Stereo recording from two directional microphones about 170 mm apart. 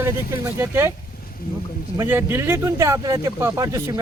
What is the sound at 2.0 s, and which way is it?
Speech, 15° right (ahead or behind).